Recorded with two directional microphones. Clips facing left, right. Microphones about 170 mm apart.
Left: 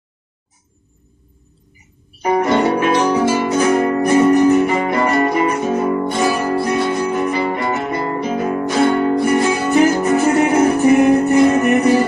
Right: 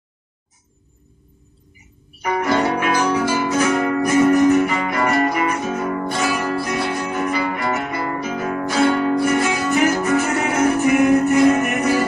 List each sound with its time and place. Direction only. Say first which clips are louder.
2.2 s music: left 4 dB; 30° left (ahead or behind)